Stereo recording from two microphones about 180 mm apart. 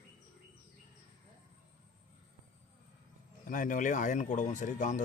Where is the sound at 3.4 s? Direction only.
50° left (ahead or behind).